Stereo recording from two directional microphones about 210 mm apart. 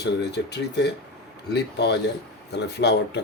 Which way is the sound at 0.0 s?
55° left (ahead or behind).